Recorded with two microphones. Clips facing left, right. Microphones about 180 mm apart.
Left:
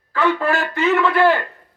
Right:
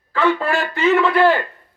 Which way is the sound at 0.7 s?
20° right (ahead or behind).